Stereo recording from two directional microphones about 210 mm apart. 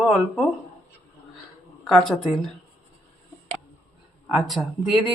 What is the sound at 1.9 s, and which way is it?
Speech, 5° left (ahead or behind).